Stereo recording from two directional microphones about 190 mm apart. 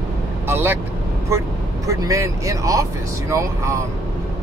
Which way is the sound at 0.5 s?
10° right (ahead or behind).